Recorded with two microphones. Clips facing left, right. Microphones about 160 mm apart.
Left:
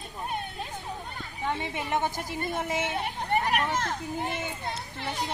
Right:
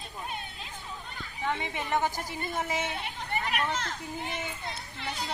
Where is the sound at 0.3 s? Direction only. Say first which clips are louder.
Left 9 dB; 50° left (ahead or behind).